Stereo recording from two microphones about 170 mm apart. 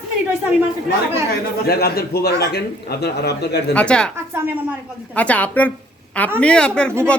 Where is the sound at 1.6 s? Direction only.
65° left (ahead or behind).